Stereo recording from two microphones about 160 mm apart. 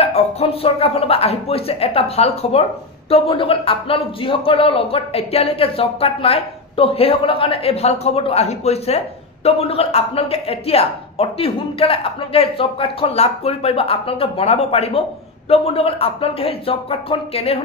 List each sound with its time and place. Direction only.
0.0 s speech: 40° left (ahead or behind)